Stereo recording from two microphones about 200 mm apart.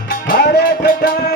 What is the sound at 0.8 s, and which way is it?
Music, 45° left (ahead or behind).